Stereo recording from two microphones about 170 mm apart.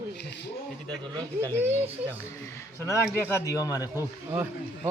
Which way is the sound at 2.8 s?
15° left (ahead or behind).